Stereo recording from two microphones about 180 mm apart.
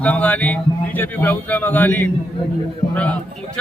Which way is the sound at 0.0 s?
10° left (ahead or behind).